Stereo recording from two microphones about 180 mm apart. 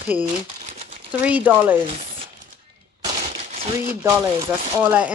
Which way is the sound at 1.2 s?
10° right (ahead or behind).